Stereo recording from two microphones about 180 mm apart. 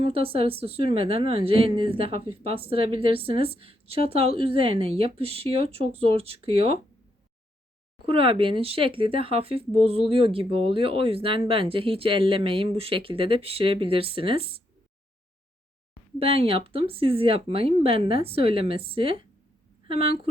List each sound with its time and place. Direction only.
0.0 s speech: 30° right (ahead or behind)
8.0 s speech: 30° right (ahead or behind)
16.1 s speech: 30° right (ahead or behind)